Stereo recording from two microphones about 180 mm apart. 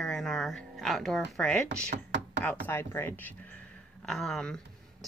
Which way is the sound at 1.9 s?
75° right (ahead or behind).